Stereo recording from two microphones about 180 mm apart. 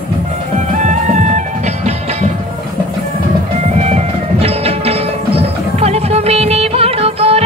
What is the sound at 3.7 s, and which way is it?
Music, 35° right (ahead or behind).